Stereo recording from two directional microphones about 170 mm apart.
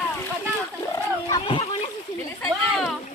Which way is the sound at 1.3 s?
30° left (ahead or behind).